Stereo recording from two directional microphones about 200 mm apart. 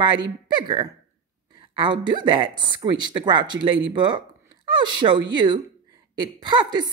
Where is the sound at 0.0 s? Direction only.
20° right (ahead or behind).